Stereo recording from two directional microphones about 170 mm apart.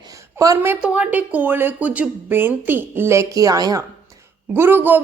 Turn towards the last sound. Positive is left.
turn(degrees=-10)  # may be behind; listen again after turning